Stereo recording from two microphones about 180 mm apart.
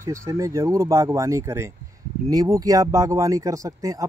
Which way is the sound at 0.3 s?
15° right (ahead or behind).